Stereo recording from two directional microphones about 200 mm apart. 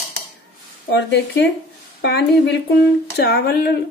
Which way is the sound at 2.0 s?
60° left (ahead or behind).